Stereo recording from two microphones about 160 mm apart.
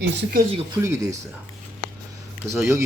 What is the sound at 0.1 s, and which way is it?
Speech, 80° right.